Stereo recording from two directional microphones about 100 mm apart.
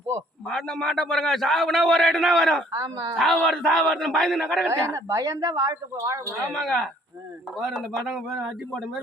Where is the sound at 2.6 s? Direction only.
40° right (ahead or behind).